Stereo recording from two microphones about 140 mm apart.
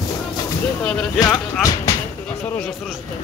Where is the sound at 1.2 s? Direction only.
25° left (ahead or behind).